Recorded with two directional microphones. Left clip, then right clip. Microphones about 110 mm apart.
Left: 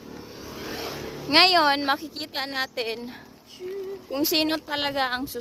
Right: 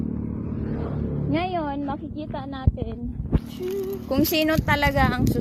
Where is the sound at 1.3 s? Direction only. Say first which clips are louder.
Left 9 dB; 65° left (ahead or behind); by 1.9 s 90° left.